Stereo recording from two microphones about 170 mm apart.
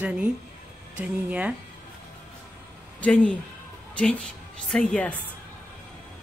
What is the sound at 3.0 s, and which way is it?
A woman's voice, 5° left (ahead or behind).